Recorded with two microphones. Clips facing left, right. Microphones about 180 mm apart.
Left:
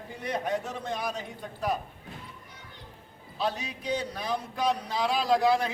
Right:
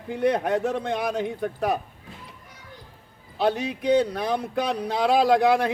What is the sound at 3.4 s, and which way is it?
Speech, 60° right (ahead or behind).